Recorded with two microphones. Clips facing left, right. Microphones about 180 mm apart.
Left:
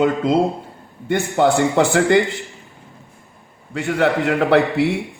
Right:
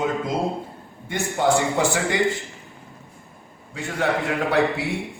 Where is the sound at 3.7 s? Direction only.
70° left (ahead or behind).